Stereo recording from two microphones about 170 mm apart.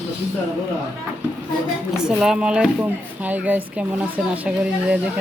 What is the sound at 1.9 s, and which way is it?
Speech, 5° right (ahead or behind).